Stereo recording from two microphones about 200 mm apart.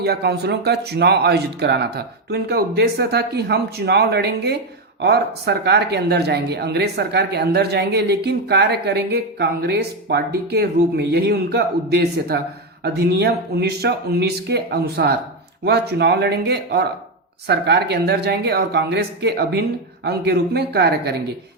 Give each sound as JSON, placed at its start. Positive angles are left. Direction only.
{"t": 0.0, "sound": "speech", "side_deg": -55}